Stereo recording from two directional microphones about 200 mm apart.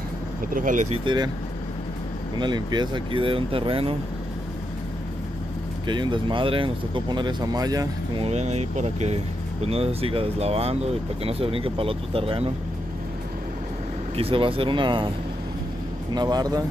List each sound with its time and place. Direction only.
0.5 s speech: 40° right (ahead or behind)
1.0 s speech: 20° right (ahead or behind)
2.3 s speech: 20° right (ahead or behind)
5.9 s speech: 25° right (ahead or behind)
8.3 s speech: 35° right (ahead or behind)
14.1 s speech: 25° right (ahead or behind)
16.1 s speech: 20° right (ahead or behind)